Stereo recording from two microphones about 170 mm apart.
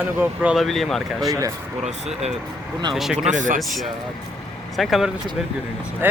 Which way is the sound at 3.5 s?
Centre (ahead or behind).